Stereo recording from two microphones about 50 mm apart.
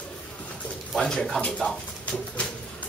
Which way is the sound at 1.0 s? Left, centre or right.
Centre.